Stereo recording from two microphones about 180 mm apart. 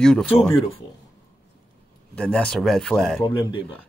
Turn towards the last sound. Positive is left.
turn(degrees=25)  # may be behind; listen again after turning